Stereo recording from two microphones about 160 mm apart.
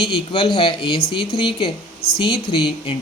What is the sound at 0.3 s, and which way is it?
Speech, 35° left (ahead or behind).